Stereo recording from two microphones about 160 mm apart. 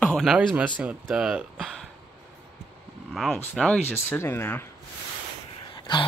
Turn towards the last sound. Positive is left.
turn(degrees=30)  # may be behind; listen again after turning